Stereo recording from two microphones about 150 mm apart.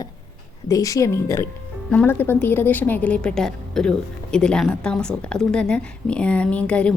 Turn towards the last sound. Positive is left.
turn(degrees=10)  # may be behind; listen again after turning